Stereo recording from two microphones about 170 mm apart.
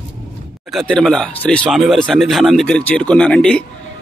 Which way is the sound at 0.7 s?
5° left (ahead or behind).